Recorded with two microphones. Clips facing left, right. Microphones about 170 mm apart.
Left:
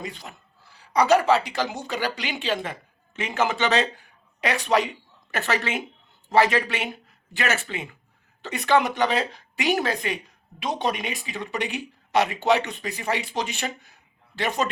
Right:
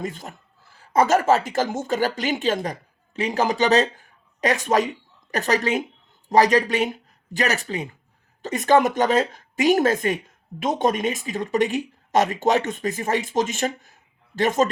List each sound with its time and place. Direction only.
0.0 s a man's voice: 50° right (ahead or behind)